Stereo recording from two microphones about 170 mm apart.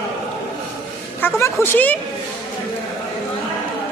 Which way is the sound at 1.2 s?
15° left (ahead or behind).